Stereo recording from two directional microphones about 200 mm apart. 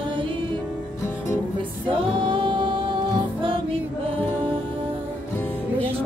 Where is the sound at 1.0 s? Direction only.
15° left (ahead or behind).